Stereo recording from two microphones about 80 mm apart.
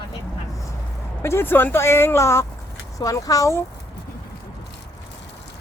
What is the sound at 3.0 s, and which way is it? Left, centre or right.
Speech, left.